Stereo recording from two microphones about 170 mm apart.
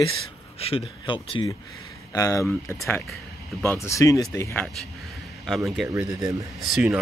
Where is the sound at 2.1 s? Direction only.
20° left (ahead or behind).